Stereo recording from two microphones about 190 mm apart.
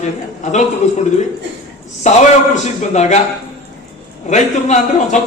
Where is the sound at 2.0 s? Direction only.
40° left (ahead or behind).